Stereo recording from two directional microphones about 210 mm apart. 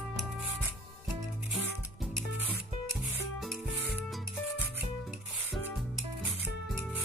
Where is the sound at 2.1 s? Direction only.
10° right (ahead or behind).